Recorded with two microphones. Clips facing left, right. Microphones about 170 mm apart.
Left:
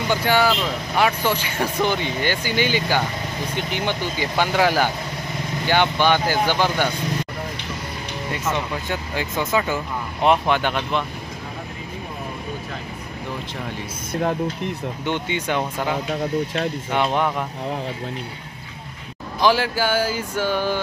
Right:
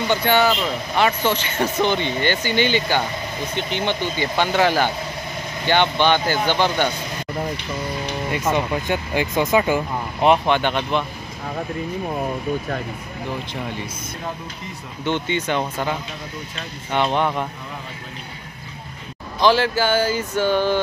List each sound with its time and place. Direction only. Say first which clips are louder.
0.1 s speech: right 1 dB; 5° left (ahead or behind)
8.3 s speech: right 3 dB; 15° right (ahead or behind)
10.2 s speech: right 2 dB; centre (ahead or behind)
15.0 s speech: right 3 dB; 10° left (ahead or behind)
16.9 s speech: right 2 dB; 5° left (ahead or behind)
19.4 s speech: right 2 dB; 10° left (ahead or behind)